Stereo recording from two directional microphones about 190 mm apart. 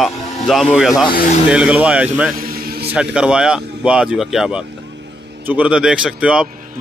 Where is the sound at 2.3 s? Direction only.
50° right (ahead or behind).